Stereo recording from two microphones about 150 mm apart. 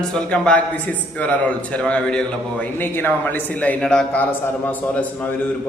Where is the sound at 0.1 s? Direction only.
5° left (ahead or behind).